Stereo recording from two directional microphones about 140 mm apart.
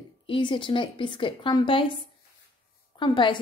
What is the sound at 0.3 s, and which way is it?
A woman's voice, 35° left (ahead or behind).